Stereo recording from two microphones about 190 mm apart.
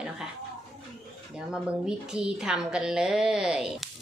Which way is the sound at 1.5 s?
5° right (ahead or behind).